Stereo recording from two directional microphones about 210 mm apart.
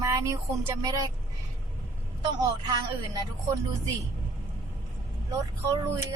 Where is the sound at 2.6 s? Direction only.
20° right (ahead or behind).